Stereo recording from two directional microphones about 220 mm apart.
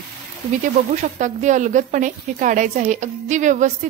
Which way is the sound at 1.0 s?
35° right (ahead or behind).